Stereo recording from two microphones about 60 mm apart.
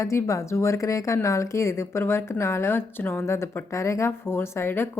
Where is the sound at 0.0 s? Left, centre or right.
Left.